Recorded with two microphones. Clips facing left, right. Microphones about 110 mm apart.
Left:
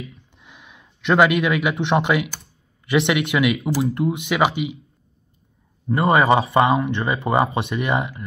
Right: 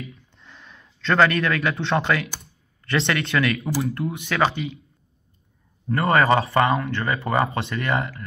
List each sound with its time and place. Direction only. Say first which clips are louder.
0.4 s speech: even; 15° left (ahead or behind)
5.9 s speech: left 2 dB; 15° left (ahead or behind)